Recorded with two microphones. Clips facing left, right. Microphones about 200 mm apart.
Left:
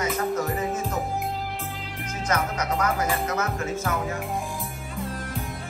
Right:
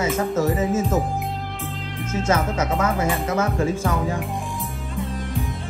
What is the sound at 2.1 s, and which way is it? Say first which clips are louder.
Speech: right 5 dB; 25° right (ahead or behind).